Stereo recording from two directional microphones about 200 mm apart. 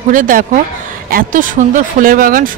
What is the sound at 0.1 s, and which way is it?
Speech, 40° right (ahead or behind).